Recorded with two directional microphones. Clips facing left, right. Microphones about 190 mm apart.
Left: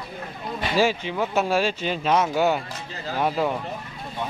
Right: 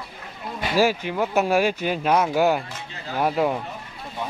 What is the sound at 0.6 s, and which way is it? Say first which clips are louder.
Speech: right 1 dB; 10° right (ahead or behind).